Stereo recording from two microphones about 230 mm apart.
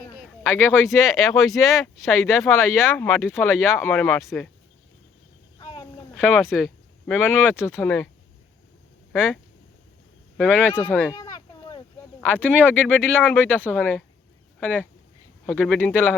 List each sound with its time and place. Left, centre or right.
0.2 s speech: centre
3.0 s speech: centre
3.3 s speech: centre
5.5 s a sound: centre
6.1 s speech: centre
7.8 s speech: centre
9.1 s speech: centre
10.7 s a sound: centre
12.8 s speech: centre